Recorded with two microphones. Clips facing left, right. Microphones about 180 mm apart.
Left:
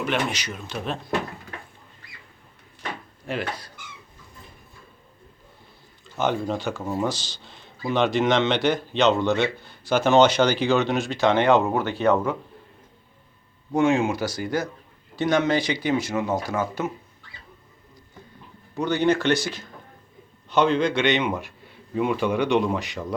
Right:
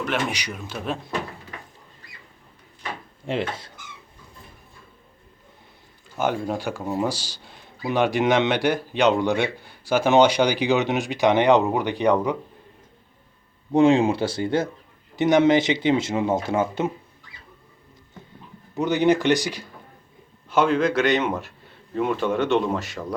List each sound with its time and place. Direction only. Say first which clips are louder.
0.3 s speech: right 1 dB; 10° right (ahead or behind)
3.2 s speech: right 3 dB; 25° right (ahead or behind)
6.1 s speech: even; 5° right (ahead or behind)
13.7 s speech: right 4 dB; 30° right (ahead or behind)
18.7 s speech: right 2 dB; 15° right (ahead or behind); by 23.1 s centre (ahead or behind)